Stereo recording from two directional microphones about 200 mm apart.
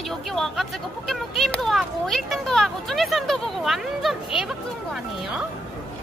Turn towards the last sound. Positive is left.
turn(degrees=0)  # may be behind; listen again after turning